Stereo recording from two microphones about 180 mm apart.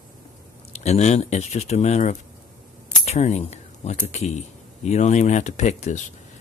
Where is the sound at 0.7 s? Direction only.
35° left (ahead or behind).